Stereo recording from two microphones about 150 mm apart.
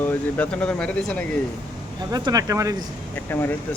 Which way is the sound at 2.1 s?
25° right (ahead or behind).